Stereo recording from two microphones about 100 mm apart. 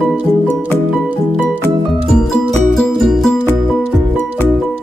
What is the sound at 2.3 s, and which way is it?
Music, 5° left (ahead or behind).